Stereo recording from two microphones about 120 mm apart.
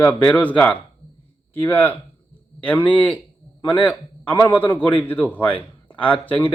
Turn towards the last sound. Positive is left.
turn(degrees=15)  # may be behind; listen again after turning